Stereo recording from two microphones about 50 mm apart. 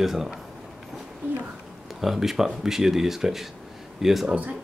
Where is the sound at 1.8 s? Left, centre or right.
Centre.